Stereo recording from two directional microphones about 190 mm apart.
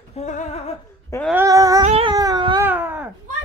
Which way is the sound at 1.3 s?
15° right (ahead or behind).